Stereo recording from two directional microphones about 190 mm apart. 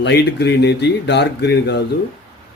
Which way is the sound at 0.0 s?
60° left (ahead or behind).